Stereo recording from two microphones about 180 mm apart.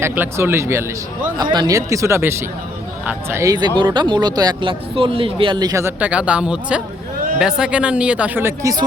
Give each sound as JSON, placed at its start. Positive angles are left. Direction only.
{"t": 0.0, "sound": "a man's voice", "side_deg": -10}